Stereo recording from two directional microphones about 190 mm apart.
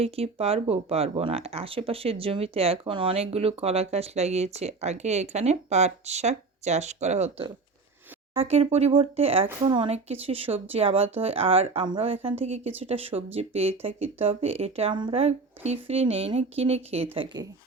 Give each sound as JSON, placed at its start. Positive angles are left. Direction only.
{"t": 0.0, "sound": "speech", "side_deg": -30}